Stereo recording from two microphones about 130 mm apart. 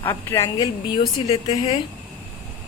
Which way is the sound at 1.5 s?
35° left (ahead or behind).